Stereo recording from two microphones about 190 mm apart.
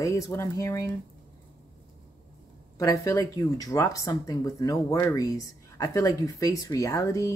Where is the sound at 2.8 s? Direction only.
15° left (ahead or behind).